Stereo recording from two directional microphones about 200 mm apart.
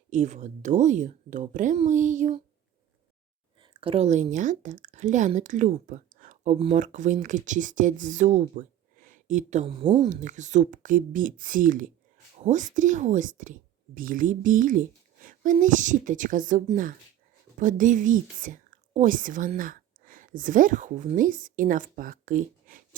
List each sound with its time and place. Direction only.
0.1 s a woman's voice: 35° right (ahead or behind)
3.6 s a woman's voice: 25° right (ahead or behind); by 23.0 s 40° right (ahead or behind)